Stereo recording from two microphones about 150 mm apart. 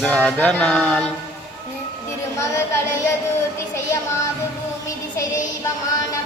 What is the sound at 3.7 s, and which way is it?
Music, 20° left (ahead or behind).